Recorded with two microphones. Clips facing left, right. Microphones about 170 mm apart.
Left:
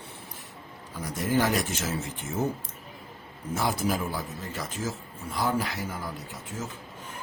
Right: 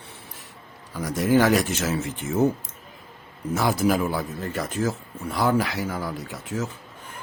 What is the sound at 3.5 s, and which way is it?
A man's voice, 80° right.